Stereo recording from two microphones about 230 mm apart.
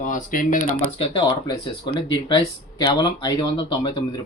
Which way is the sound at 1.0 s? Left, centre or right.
Left.